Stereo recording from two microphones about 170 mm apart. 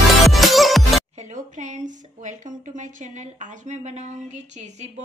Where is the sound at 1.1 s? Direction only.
45° right (ahead or behind).